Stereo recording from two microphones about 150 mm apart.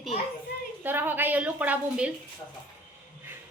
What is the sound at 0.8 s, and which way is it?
A woman's voice, 15° right (ahead or behind).